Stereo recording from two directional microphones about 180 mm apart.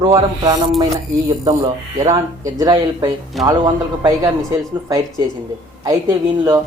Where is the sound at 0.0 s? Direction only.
20° right (ahead or behind).